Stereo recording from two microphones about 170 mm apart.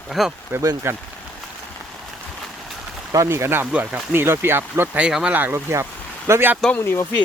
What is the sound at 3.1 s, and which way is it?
Speech, 15° right (ahead or behind).